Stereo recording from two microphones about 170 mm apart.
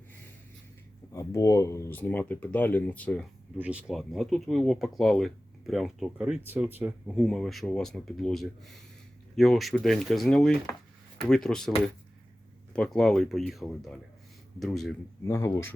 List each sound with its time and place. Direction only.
1.1 s speech: 20° left (ahead or behind)
3.6 s speech: 5° right (ahead or behind)
7.2 s speech: centre (ahead or behind)
12.7 s speech: 5° left (ahead or behind)
15.2 s speech: 20° left (ahead or behind)